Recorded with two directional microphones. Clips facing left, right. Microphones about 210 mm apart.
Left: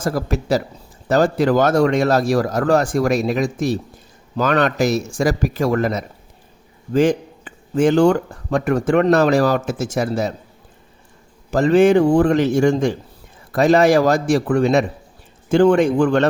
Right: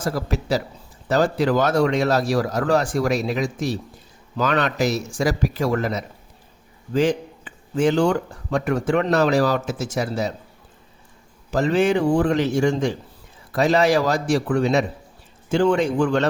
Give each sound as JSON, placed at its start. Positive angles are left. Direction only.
{"t": 0.0, "sound": "speech", "side_deg": 50}
{"t": 11.5, "sound": "speech", "side_deg": 50}